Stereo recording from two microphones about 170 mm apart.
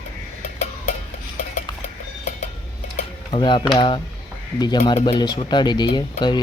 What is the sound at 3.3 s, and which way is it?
Speech, 30° left (ahead or behind).